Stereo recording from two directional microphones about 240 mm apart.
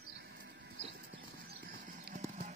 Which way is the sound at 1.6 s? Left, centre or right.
Right.